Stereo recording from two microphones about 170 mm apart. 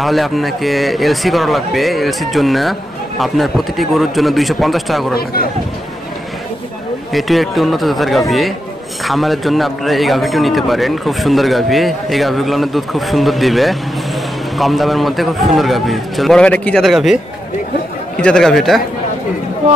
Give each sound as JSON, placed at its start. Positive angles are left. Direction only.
{"t": 0.0, "sound": "a man's voice", "side_deg": 0}
{"t": 5.1, "sound": "speech", "side_deg": 65}
{"t": 7.1, "sound": "a man's voice", "side_deg": 0}
{"t": 18.2, "sound": "a man's voice", "side_deg": 5}